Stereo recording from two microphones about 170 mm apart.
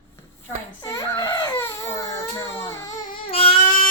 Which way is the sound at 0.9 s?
15° left (ahead or behind).